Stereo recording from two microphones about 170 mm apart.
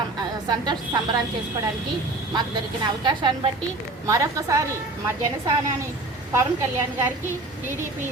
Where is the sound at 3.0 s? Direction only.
25° right (ahead or behind).